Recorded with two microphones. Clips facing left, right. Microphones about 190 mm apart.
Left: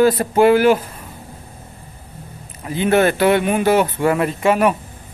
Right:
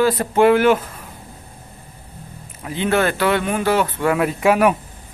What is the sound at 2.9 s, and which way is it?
Speech, 20° left (ahead or behind).